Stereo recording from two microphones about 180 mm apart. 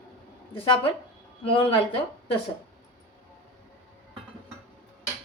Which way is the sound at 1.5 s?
30° left (ahead or behind).